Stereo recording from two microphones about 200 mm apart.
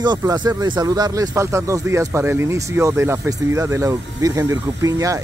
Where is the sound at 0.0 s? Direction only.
20° right (ahead or behind).